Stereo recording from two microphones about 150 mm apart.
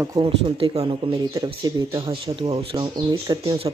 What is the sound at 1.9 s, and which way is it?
Speech, 35° right (ahead or behind).